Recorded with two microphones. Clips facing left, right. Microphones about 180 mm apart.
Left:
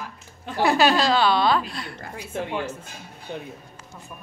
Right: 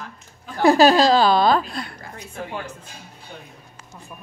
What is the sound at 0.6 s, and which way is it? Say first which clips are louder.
A woman's voice: right 6 dB; 40° right (ahead or behind).